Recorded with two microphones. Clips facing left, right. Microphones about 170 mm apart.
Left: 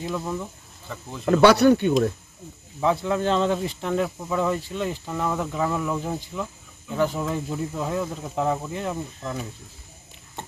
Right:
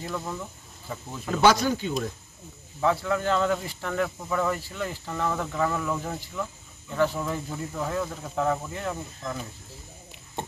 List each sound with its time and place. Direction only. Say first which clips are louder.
0.0 s speech: left 4 dB; 15° left (ahead or behind)
1.2 s speech: left 6 dB; 65° left (ahead or behind)
2.8 s speech: left 2 dB; 20° left (ahead or behind)